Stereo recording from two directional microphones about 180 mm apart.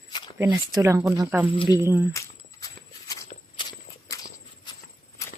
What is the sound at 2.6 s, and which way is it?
Walk, 20° left (ahead or behind).